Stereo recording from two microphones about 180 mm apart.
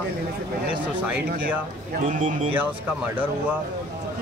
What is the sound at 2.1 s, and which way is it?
Speech, 45° right (ahead or behind).